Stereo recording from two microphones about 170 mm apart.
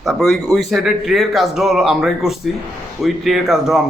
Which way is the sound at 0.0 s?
Centre (ahead or behind).